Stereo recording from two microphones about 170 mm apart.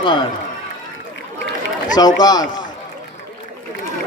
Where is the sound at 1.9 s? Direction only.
25° left (ahead or behind).